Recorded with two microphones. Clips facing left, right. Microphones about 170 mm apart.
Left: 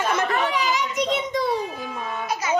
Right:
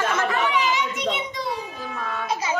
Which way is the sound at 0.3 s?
35° left (ahead or behind).